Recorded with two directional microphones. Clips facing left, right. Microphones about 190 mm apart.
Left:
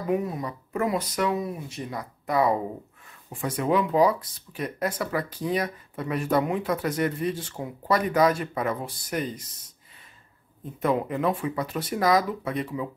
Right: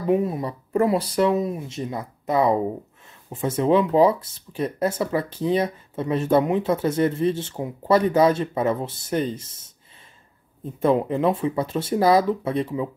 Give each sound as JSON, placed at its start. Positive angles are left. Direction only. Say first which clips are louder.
{"t": 0.0, "sound": "speech", "louder": "right 5 dB", "side_deg": -25}
{"t": 10.8, "sound": "speech", "louder": "right 5 dB", "side_deg": -30}